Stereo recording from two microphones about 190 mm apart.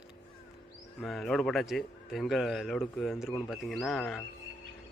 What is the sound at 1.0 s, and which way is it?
A man's voice, centre (ahead or behind).